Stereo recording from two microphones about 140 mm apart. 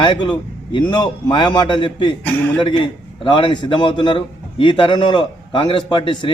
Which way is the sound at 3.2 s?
35° left (ahead or behind).